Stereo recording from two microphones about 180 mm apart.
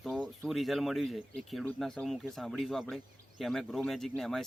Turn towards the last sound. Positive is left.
turn(degrees=0)  # may be behind; listen again after turning